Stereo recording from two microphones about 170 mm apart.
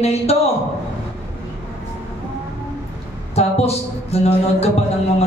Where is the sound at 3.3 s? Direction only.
35° left (ahead or behind).